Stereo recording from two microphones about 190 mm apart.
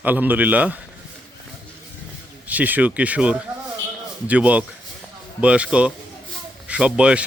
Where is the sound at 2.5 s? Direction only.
10° right (ahead or behind).